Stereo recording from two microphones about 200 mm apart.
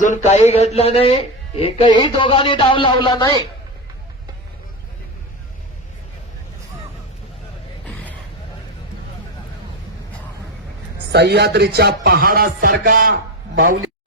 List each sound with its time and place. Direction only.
0.0 s speech: 35° left (ahead or behind)
7.9 s a sound: 5° left (ahead or behind)
11.1 s speech: 55° right (ahead or behind)